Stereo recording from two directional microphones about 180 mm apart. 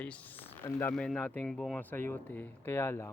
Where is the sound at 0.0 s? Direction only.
10° left (ahead or behind).